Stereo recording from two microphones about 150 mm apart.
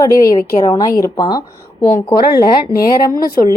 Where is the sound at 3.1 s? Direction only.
80° left.